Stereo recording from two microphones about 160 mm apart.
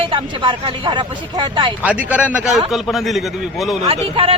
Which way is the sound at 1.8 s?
10° right (ahead or behind).